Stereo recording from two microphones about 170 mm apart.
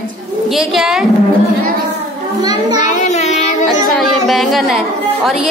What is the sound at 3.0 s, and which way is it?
Child singing, 40° left (ahead or behind).